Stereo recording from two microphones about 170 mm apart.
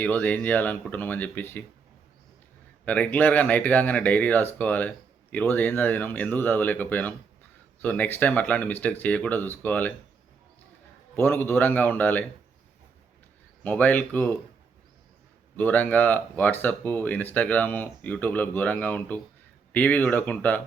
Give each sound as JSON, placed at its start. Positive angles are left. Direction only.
{"t": 0.0, "sound": "speech", "side_deg": 10}
{"t": 2.8, "sound": "speech", "side_deg": 10}
{"t": 11.1, "sound": "speech", "side_deg": 10}
{"t": 13.7, "sound": "speech", "side_deg": 10}
{"t": 15.5, "sound": "speech", "side_deg": 10}